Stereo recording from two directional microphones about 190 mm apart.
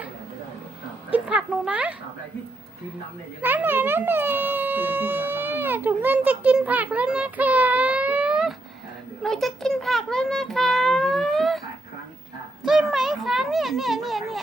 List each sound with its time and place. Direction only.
1.1 s a sound: 5° right (ahead or behind)
3.4 s a child's voice: 10° right (ahead or behind)
12.6 s speech: centre (ahead or behind)